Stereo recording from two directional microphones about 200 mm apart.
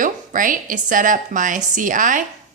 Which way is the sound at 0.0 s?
40° right (ahead or behind).